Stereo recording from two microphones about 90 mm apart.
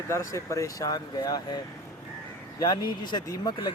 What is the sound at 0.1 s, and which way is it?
Speech, 35° left (ahead or behind).